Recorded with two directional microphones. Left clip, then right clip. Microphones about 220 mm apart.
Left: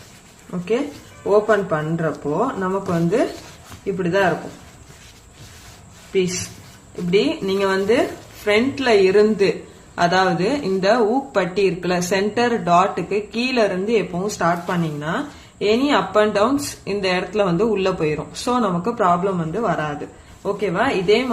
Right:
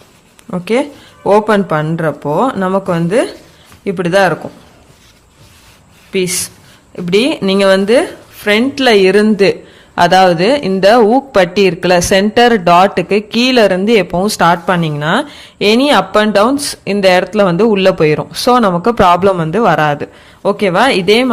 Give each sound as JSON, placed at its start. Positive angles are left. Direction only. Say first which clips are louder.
{"t": 1.5, "sound": "speech", "louder": "right 6 dB", "side_deg": -55}
{"t": 7.1, "sound": "speech", "louder": "right 7 dB", "side_deg": -50}